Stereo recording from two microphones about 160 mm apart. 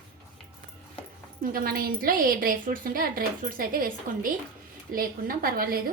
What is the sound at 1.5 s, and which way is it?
A woman's voice, 65° right (ahead or behind).